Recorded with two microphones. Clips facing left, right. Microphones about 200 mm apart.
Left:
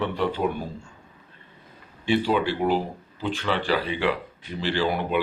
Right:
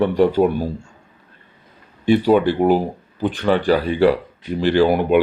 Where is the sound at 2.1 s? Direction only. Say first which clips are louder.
Right 8 dB; 50° right (ahead or behind).